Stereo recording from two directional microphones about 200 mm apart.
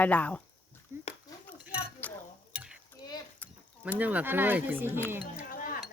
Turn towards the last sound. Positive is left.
turn(degrees=45)  # may be behind; listen again after turning